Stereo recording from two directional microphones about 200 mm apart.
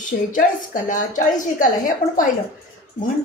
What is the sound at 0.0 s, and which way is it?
A woman's voice, 40° left (ahead or behind).